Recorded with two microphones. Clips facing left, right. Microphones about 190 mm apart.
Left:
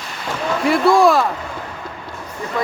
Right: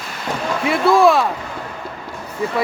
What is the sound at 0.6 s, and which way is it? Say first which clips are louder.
Speech: even; centre (ahead or behind).